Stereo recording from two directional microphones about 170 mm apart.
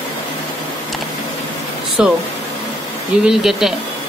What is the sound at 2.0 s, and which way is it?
Speech, 5° right (ahead or behind).